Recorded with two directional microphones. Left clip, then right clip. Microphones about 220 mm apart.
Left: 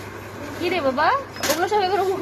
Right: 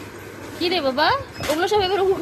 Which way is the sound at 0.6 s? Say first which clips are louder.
Right 1 dB; 25° right (ahead or behind).